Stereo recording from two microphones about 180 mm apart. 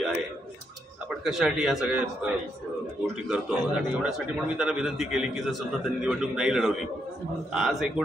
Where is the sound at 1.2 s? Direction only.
Centre (ahead or behind).